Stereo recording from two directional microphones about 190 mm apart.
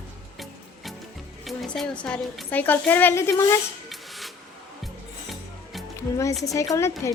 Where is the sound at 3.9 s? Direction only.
Centre (ahead or behind).